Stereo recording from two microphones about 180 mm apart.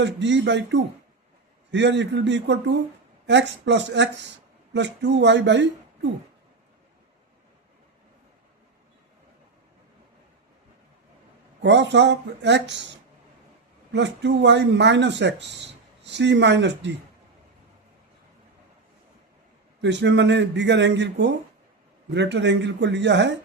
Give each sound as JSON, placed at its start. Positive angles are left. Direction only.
{"t": 0.0, "sound": "a man's voice", "side_deg": -80}
{"t": 11.6, "sound": "speech", "side_deg": -75}
{"t": 13.9, "sound": "speech", "side_deg": -80}
{"t": 19.8, "sound": "a man's voice", "side_deg": -75}